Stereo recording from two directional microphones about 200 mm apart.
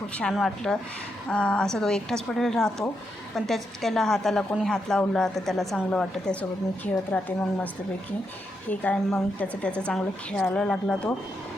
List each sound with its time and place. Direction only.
0.2 s a woman's voice: 5° left (ahead or behind)
8.7 s a woman's voice: 10° left (ahead or behind)